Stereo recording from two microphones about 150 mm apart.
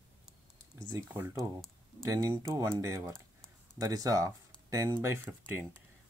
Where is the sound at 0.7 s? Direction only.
20° right (ahead or behind).